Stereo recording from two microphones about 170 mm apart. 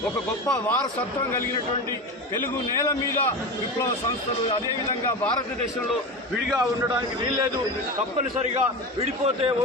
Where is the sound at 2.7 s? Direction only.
20° left (ahead or behind).